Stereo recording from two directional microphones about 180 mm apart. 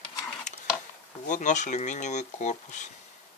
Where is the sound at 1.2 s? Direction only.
45° left (ahead or behind).